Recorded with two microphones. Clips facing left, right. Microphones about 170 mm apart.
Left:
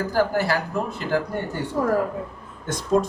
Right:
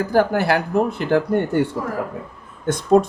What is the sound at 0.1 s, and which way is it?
Speech, 60° right (ahead or behind).